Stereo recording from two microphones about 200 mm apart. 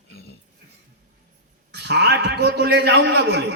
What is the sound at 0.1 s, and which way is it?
Dog, 50° left (ahead or behind).